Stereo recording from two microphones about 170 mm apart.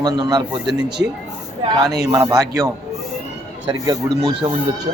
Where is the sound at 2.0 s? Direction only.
20° right (ahead or behind).